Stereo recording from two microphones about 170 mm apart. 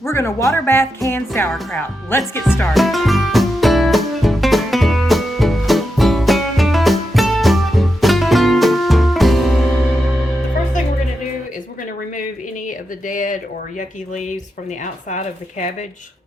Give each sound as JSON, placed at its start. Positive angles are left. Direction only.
{"t": 0.0, "sound": "speech", "side_deg": 15}
{"t": 2.6, "sound": "music", "side_deg": 0}
{"t": 12.6, "sound": "a sound", "side_deg": 50}
{"t": 15.1, "sound": "speech", "side_deg": 45}